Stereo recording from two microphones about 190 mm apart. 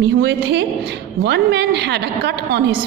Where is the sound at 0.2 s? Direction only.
65° right (ahead or behind).